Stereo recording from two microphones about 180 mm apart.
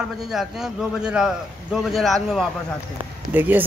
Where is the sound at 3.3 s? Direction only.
10° right (ahead or behind).